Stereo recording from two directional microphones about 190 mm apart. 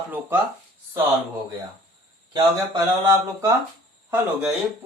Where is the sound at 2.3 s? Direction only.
20° right (ahead or behind).